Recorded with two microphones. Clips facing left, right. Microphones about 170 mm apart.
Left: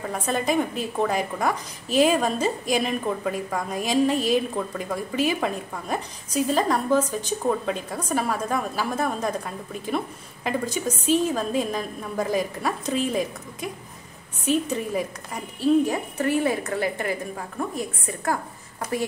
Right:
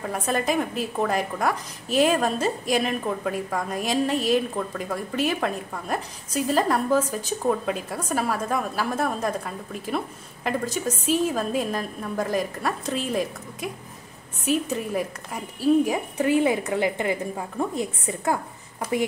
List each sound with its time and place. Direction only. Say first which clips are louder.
0.0 s a woman's voice: even; centre (ahead or behind)